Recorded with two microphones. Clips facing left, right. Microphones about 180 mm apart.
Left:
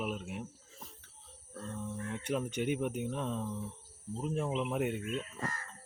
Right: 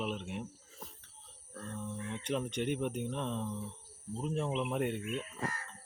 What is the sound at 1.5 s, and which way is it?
Speech, 10° left (ahead or behind).